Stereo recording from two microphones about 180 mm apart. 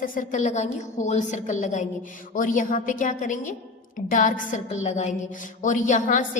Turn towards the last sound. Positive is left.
turn(degrees=45)  # may be behind; listen again after turning